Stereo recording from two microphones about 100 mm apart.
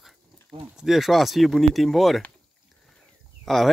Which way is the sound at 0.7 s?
Centre (ahead or behind).